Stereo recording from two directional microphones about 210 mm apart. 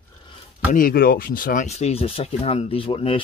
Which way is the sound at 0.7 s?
40° left (ahead or behind).